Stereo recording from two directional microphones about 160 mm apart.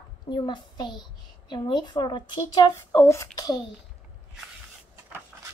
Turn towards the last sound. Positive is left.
turn(degrees=20)  # may be behind; listen again after turning